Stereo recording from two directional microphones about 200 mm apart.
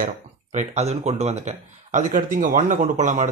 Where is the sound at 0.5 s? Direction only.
35° right (ahead or behind).